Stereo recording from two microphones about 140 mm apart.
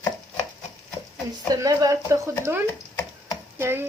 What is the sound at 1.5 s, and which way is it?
Speech, 25° right (ahead or behind).